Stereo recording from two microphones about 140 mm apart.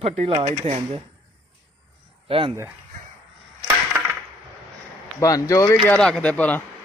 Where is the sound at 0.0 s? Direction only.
45° right (ahead or behind).